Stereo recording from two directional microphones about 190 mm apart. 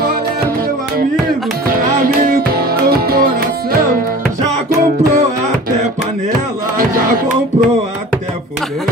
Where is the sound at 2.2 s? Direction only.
50° right (ahead or behind).